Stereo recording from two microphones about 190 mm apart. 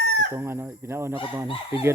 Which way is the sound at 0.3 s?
15° right (ahead or behind).